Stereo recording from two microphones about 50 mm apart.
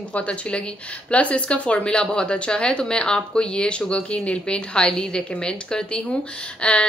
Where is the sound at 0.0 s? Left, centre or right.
Left.